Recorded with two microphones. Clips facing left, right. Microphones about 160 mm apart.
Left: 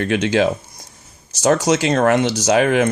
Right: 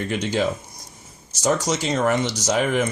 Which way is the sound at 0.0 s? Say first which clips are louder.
Left 6 dB; 75° left (ahead or behind).